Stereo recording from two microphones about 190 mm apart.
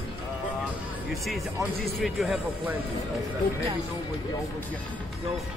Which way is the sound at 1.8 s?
Centre (ahead or behind).